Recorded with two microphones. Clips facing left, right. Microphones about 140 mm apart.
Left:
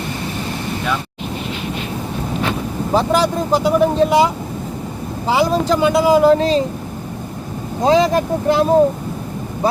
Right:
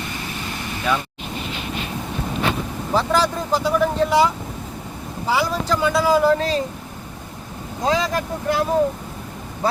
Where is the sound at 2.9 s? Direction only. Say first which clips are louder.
Left 4 dB; 20° left (ahead or behind).